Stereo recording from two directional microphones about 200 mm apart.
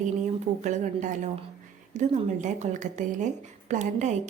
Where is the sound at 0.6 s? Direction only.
40° right (ahead or behind).